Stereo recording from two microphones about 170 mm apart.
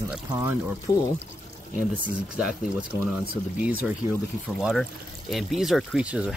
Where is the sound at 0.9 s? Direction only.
20° left (ahead or behind).